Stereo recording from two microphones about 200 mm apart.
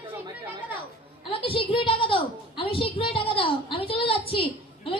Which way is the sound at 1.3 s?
25° left (ahead or behind).